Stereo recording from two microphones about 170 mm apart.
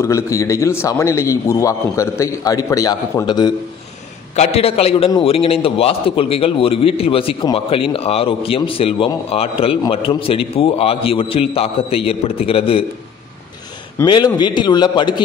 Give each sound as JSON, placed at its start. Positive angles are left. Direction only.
{"t": 0.0, "sound": "a man's voice", "side_deg": 15}
{"t": 4.4, "sound": "a man's voice", "side_deg": 35}
{"t": 14.0, "sound": "a man's voice", "side_deg": 25}